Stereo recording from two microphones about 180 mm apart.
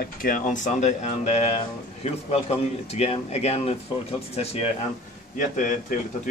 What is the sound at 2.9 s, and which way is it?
Speech, 35° left (ahead or behind).